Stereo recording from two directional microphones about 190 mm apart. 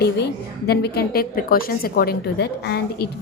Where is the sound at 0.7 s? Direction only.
60° left (ahead or behind).